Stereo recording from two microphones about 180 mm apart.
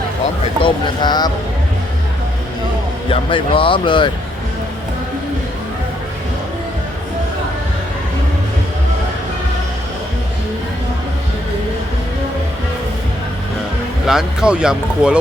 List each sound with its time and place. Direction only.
0.6 s speech: 25° left (ahead or behind)
3.1 s speech: 30° left (ahead or behind)
14.1 s speech: 5° right (ahead or behind)